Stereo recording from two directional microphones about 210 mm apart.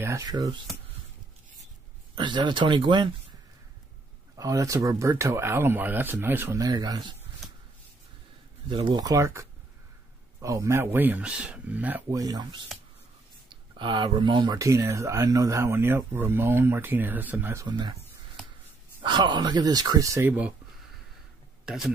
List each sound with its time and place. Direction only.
0.0 s speech: 15° right (ahead or behind)
2.1 s speech: 20° right (ahead or behind)
4.4 s speech: 15° right (ahead or behind)
8.6 s speech: 20° right (ahead or behind)
13.7 s speech: 25° right (ahead or behind)
19.0 s speech: 20° right (ahead or behind)
21.6 s speech: centre (ahead or behind)